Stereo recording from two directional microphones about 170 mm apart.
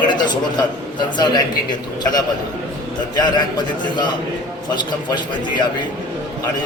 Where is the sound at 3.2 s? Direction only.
25° left (ahead or behind).